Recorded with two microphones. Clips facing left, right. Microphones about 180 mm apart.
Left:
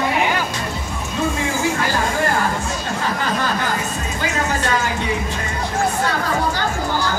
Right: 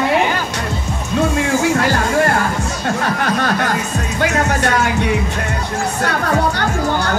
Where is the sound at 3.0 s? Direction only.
70° right (ahead or behind).